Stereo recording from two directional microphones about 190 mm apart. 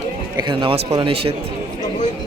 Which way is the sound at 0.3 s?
25° right (ahead or behind).